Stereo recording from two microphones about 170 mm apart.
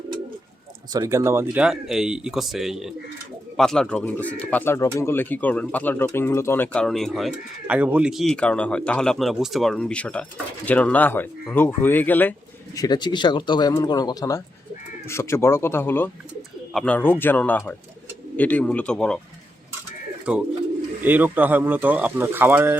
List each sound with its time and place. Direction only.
0.9 s speech: 20° right (ahead or behind)
1.6 s speech: 5° right (ahead or behind)
12.7 s speech: 25° left (ahead or behind); by 19.2 s 5° left (ahead or behind)
20.3 s speech: 5° right (ahead or behind)